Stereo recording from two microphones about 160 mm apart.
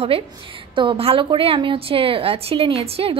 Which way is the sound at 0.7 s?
35° right (ahead or behind).